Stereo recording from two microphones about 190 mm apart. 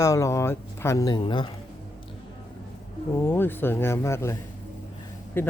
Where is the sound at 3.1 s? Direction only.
10° left (ahead or behind).